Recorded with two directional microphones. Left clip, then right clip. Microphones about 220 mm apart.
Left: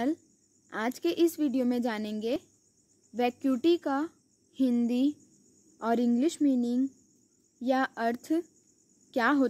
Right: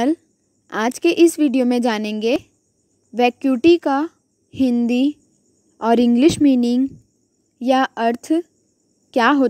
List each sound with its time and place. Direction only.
0.7 s a woman's voice: 35° right (ahead or behind)